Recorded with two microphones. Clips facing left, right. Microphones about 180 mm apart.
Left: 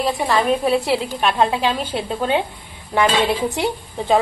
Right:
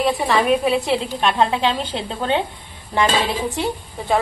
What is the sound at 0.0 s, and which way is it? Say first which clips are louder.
Speech: right 1 dB; centre (ahead or behind).